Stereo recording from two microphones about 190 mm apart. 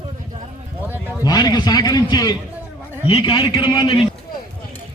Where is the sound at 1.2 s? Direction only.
20° left (ahead or behind).